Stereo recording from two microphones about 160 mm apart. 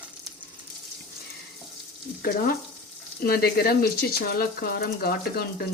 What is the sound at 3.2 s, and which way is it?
Speech, 70° left (ahead or behind).